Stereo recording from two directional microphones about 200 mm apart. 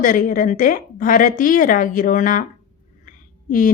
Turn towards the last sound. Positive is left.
turn(degrees=40)  # may be behind; listen again after turning